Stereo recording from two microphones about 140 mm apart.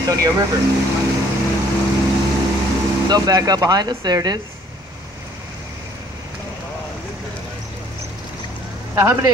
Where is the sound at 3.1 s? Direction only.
25° right (ahead or behind).